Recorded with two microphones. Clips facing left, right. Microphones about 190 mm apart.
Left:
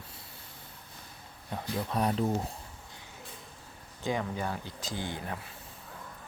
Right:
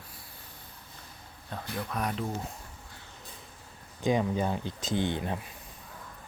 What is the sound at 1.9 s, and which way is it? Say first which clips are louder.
Speech: left 4 dB; 30° left (ahead or behind).